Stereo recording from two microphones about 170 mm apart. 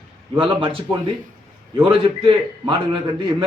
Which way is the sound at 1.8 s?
30° right (ahead or behind).